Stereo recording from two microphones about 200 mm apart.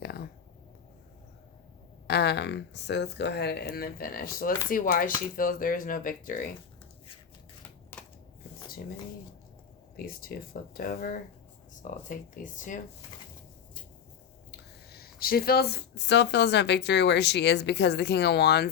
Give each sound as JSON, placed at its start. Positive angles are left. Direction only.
{"t": 0.0, "sound": "a sound", "side_deg": 55}
{"t": 2.0, "sound": "speech", "side_deg": 55}
{"t": 10.0, "sound": "speech", "side_deg": 45}
{"t": 14.5, "sound": "speech", "side_deg": 50}